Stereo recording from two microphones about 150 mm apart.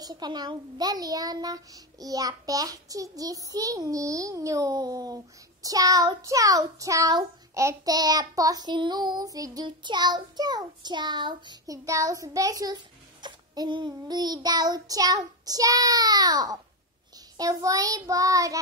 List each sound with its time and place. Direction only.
0.0 s a child's voice: 30° right (ahead or behind)